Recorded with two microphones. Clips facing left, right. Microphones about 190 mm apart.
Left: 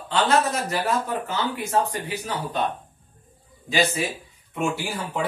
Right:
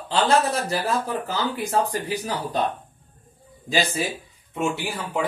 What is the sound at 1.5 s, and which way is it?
Speech, 35° right (ahead or behind).